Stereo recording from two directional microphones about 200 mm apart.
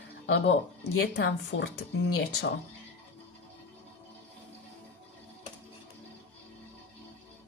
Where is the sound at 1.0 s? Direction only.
55° left (ahead or behind).